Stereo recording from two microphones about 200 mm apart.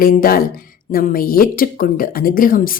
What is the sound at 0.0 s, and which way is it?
Speech, 45° left (ahead or behind).